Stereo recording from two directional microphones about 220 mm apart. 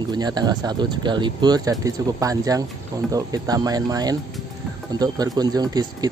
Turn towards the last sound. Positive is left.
turn(degrees=-15)  # may be behind; listen again after turning